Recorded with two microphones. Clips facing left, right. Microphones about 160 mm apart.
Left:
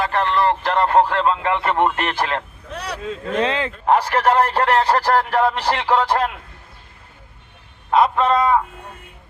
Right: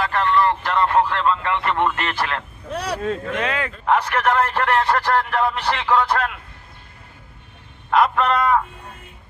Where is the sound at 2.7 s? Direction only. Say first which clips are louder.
Right 4 dB; 40° right (ahead or behind).